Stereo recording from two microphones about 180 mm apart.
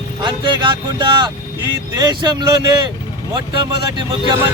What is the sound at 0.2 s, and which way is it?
Speech, 25° right (ahead or behind).